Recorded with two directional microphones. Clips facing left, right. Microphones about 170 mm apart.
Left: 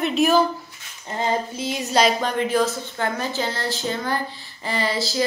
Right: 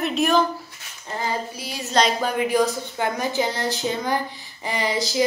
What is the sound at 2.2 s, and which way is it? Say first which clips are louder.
Speech: even; 10° right (ahead or behind).